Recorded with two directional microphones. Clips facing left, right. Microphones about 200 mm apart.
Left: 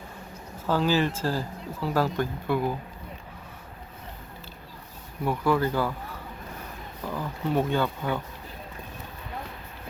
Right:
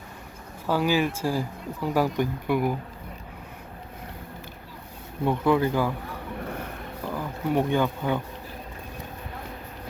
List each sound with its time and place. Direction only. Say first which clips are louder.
0.7 s speech: right 1 dB; 10° right (ahead or behind)
5.2 s speech: right 2 dB; 20° right (ahead or behind)
7.1 s speech: right 1 dB; 15° right (ahead or behind)